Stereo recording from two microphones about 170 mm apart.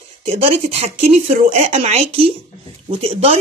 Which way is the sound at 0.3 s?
35° right (ahead or behind).